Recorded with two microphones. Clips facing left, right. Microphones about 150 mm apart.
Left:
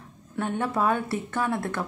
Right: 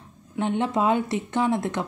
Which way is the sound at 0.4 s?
20° right (ahead or behind).